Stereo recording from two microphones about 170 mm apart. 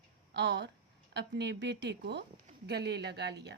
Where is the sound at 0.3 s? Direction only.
90° right.